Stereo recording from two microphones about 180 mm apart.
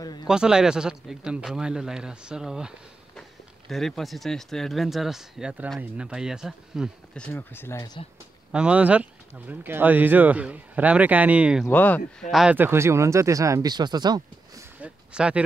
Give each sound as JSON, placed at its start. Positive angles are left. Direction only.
{"t": 0.0, "sound": "a sound", "side_deg": 20}
{"t": 0.3, "sound": "speech", "side_deg": -5}
{"t": 8.5, "sound": "speech", "side_deg": -5}
{"t": 11.6, "sound": "speech", "side_deg": 10}
{"t": 14.8, "sound": "speech", "side_deg": -5}